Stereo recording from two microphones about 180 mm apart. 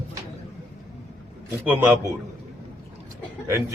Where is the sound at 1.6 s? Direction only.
15° right (ahead or behind).